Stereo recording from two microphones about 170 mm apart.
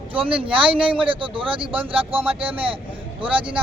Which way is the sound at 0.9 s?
30° right (ahead or behind).